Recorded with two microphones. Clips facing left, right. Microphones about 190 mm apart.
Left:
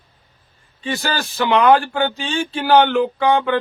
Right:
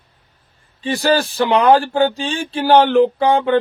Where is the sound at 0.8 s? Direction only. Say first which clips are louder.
Right 7 dB; 35° right (ahead or behind).